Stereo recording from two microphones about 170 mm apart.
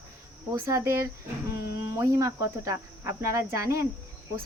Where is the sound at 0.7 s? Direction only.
20° right (ahead or behind).